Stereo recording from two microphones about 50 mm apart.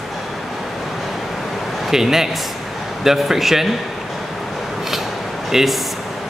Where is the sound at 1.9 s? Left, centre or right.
Centre.